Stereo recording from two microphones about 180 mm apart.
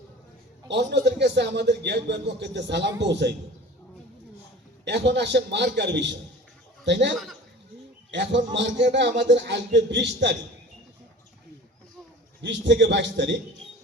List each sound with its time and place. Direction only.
0.7 s a man's voice: 70° right (ahead or behind)
4.9 s a man's voice: 70° right (ahead or behind)
8.1 s a man's voice: 90° right
12.4 s a man's voice: 80° right